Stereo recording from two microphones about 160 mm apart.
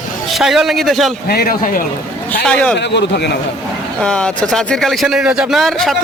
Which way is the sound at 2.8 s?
90° left.